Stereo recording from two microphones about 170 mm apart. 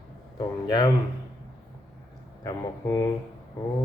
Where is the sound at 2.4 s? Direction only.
20° left (ahead or behind).